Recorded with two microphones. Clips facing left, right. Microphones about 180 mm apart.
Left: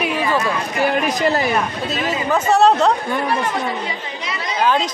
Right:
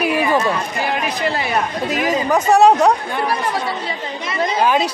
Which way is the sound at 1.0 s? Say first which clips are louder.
Left 3 dB; 45° left (ahead or behind).